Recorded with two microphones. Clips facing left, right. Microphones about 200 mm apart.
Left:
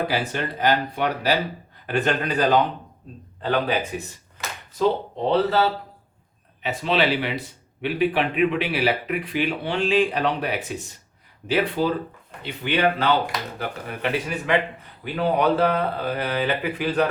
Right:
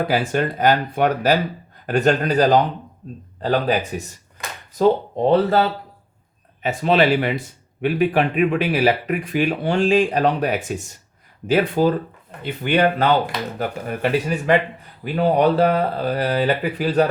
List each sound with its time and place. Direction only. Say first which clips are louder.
0.1 s speech: right 6 dB; 45° right (ahead or behind)